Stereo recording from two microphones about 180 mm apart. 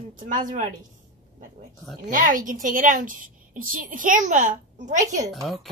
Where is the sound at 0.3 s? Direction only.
45° right (ahead or behind).